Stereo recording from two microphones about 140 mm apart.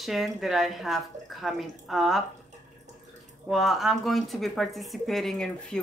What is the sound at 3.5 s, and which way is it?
A woman's voice, centre (ahead or behind).